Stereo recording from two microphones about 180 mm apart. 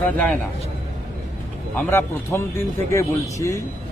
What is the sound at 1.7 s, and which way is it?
Speech, 10° left (ahead or behind).